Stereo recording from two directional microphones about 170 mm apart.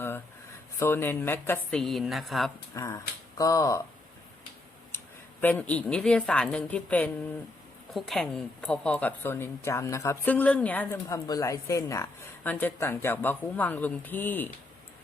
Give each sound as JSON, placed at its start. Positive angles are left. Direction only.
{"t": 0.8, "sound": "a woman's voice", "side_deg": 15}
{"t": 1.8, "sound": "a woman's voice", "side_deg": 0}
{"t": 2.7, "sound": "speech", "side_deg": 20}
{"t": 5.4, "sound": "a woman's voice", "side_deg": 10}